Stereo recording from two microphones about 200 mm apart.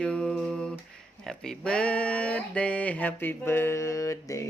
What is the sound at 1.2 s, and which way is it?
Speech, 5° left (ahead or behind).